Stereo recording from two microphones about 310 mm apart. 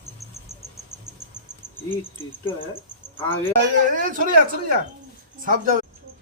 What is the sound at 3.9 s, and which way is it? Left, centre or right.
Speech, right.